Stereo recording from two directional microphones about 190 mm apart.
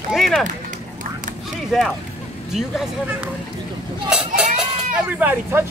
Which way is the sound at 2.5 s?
Centre (ahead or behind).